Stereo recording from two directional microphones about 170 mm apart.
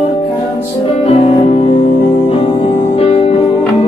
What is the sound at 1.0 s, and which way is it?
Music, 35° left (ahead or behind).